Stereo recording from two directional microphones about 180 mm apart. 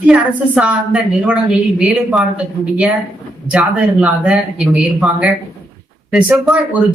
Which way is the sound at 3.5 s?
5° right (ahead or behind).